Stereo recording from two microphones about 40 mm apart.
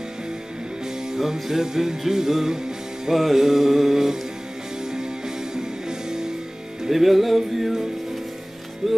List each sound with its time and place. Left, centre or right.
1.0 s music: centre
6.9 s music: centre